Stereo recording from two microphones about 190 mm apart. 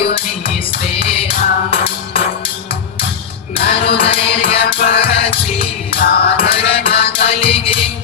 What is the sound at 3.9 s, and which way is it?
Music, 30° left (ahead or behind).